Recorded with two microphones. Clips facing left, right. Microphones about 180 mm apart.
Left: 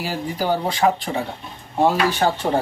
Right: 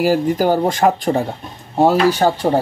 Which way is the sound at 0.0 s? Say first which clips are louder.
Right 9 dB; 45° right (ahead or behind).